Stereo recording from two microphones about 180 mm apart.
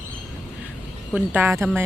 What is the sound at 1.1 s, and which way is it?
Speech, 10° right (ahead or behind).